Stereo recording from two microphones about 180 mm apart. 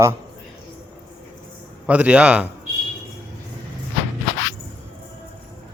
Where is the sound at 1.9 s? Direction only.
5° right (ahead or behind).